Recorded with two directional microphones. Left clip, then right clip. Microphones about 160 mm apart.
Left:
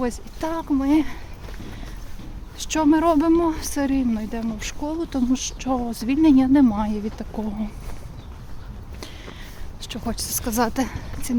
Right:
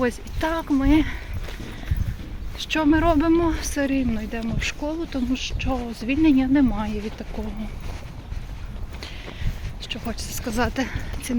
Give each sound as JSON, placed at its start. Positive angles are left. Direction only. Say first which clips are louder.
{"t": 0.0, "sound": "speech", "louder": "right 3 dB", "side_deg": 20}
{"t": 2.6, "sound": "speech", "louder": "left 1 dB", "side_deg": 45}
{"t": 9.8, "sound": "speech", "louder": "left 1 dB", "side_deg": 65}
{"t": 10.5, "sound": "a woman's voice", "louder": "left 2 dB", "side_deg": 55}
{"t": 10.9, "sound": "a sound", "louder": "even", "side_deg": 35}